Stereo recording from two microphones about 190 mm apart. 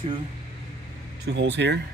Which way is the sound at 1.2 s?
65° right (ahead or behind).